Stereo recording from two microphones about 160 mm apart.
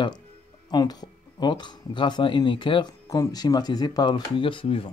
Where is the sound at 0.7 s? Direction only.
25° left (ahead or behind).